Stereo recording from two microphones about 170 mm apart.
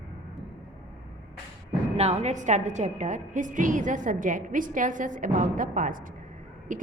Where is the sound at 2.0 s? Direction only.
40° right (ahead or behind).